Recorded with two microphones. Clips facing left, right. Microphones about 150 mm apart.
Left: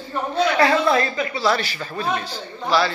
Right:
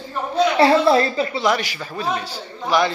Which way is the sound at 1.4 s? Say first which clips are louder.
Right 1 dB; 15° right (ahead or behind).